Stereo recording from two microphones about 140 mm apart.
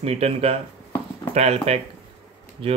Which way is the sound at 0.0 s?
50° right (ahead or behind).